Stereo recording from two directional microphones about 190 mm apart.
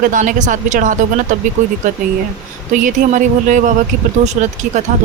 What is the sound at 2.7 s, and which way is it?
Speech, 40° right (ahead or behind).